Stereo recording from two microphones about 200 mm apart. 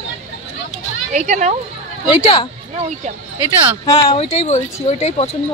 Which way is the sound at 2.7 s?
35° right (ahead or behind).